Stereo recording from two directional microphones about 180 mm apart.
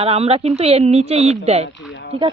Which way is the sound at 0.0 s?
35° right (ahead or behind).